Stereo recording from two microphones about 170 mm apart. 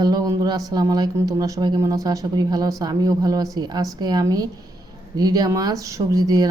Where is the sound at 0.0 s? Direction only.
20° right (ahead or behind).